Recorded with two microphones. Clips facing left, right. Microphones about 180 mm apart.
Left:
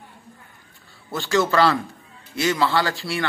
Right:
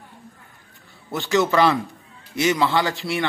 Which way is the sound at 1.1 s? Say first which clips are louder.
Right 1 dB; 20° right (ahead or behind).